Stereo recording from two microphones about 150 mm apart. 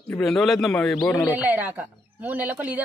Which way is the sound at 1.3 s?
10° right (ahead or behind).